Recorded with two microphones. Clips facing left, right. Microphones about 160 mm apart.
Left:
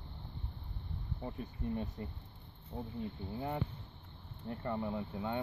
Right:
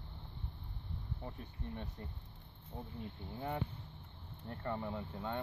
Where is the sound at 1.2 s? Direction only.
10° left (ahead or behind).